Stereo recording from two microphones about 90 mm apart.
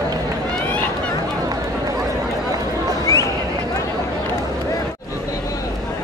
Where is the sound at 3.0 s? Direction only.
40° left (ahead or behind).